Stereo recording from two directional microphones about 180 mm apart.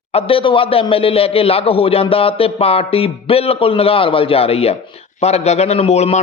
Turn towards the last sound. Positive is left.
turn(degrees=35)  # may be behind; listen again after turning